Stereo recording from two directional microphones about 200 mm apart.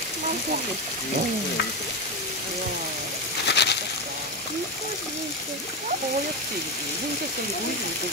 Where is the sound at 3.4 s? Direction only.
60° left (ahead or behind).